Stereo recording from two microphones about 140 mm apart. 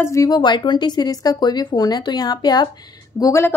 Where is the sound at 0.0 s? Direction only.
20° left (ahead or behind).